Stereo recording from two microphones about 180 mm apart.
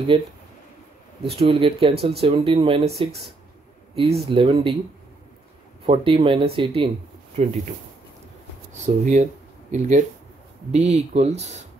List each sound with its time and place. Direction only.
0.1 s speech: 30° right (ahead or behind)
3.9 s speech: 30° right (ahead or behind)
5.9 s speech: 30° right (ahead or behind)
8.8 s speech: 40° right (ahead or behind)